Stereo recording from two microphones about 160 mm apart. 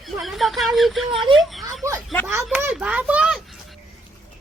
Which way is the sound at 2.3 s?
15° right (ahead or behind).